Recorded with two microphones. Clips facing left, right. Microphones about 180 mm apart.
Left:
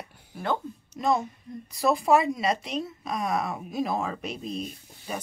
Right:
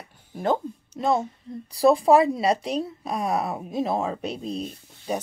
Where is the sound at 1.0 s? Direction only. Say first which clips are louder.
Right 2 dB; 30° right (ahead or behind).